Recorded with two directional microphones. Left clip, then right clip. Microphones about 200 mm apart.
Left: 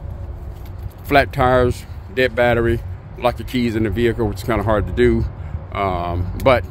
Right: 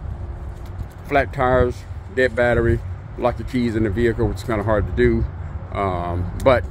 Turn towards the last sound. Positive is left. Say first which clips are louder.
# left 1 dB
turn(degrees=10)  # may be behind; listen again after turning